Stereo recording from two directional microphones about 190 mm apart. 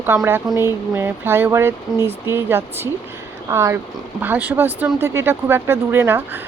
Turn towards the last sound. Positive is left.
turn(degrees=-10)  # may be behind; listen again after turning